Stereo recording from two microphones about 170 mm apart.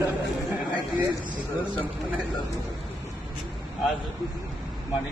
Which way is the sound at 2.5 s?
20° left (ahead or behind).